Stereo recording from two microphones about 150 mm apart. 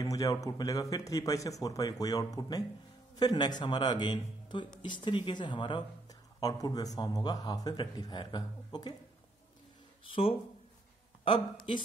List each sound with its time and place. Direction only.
0.0 s speech: 25° left (ahead or behind)
10.0 s speech: 35° left (ahead or behind)